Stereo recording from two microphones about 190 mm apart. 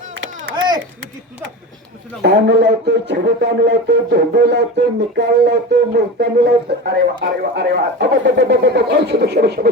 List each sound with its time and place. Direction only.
2.2 s speech: 65° right (ahead or behind)